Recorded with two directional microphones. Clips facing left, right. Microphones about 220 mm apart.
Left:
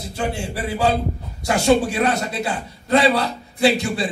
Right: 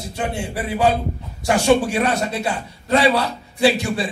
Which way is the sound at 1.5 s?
25° left (ahead or behind).